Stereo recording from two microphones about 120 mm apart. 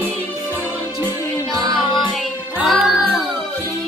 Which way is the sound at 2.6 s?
Centre (ahead or behind).